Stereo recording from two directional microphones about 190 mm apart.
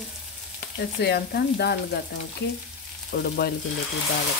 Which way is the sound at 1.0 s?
60° left (ahead or behind).